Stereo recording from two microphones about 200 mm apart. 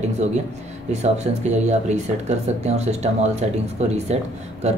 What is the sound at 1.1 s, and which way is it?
Speech, 35° right (ahead or behind).